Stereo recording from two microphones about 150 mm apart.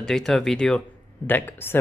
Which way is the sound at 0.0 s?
5° left (ahead or behind).